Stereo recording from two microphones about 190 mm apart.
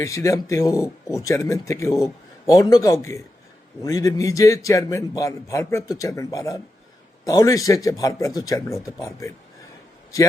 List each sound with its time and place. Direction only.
0.0 s a man's voice: 15° left (ahead or behind)